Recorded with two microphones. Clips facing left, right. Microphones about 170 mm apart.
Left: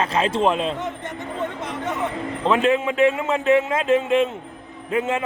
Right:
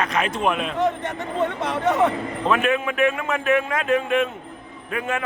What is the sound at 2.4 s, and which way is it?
Speech, 25° left (ahead or behind).